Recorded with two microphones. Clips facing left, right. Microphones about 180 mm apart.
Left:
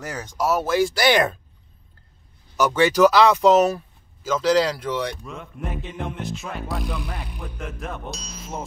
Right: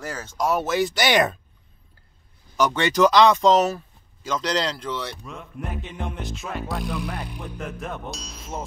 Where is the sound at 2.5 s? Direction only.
10° left (ahead or behind).